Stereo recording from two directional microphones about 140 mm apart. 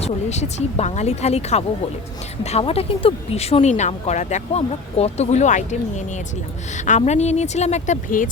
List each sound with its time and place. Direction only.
0.0 s speech: 50° left (ahead or behind)
6.7 s speech: 60° left (ahead or behind)